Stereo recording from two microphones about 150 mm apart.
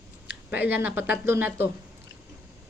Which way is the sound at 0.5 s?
15° right (ahead or behind).